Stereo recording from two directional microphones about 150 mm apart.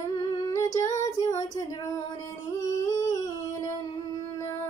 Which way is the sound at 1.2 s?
25° left (ahead or behind).